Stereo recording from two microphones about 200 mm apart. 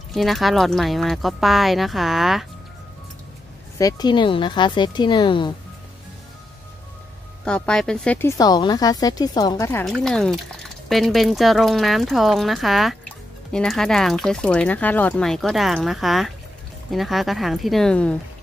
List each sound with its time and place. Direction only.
0.1 s speech: centre (ahead or behind)
3.7 s speech: 20° left (ahead or behind)
7.4 s speech: 5° left (ahead or behind)
9.8 s speech: centre (ahead or behind)